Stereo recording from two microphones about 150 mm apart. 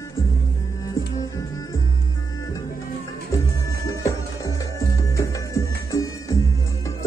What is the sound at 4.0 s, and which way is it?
Music, 20° left (ahead or behind).